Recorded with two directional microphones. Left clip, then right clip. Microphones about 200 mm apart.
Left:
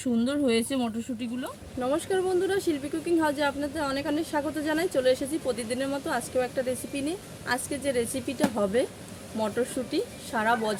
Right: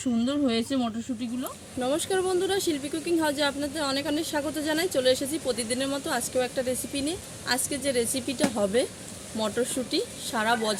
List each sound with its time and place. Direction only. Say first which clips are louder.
0.3 s speech: left 1 dB; 20° left (ahead or behind)
1.8 s speech: even; centre (ahead or behind)